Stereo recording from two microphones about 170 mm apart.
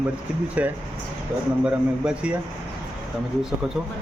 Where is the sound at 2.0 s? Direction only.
5° right (ahead or behind).